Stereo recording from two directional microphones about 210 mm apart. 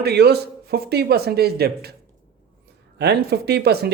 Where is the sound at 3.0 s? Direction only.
50° right (ahead or behind).